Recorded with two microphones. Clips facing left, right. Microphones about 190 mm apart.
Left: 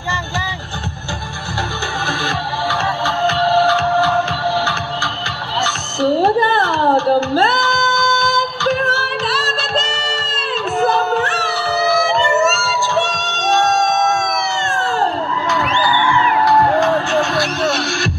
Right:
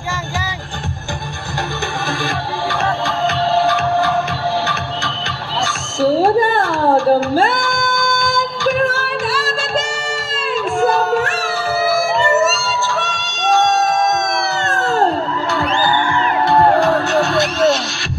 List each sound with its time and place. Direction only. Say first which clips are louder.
2.0 s music: left 1 dB; 15° right (ahead or behind)
5.7 s music: right 1 dB; 10° right (ahead or behind)
10.8 s a sound: right 1 dB; 10° right (ahead or behind)
14.7 s music: right 4 dB; 40° right (ahead or behind)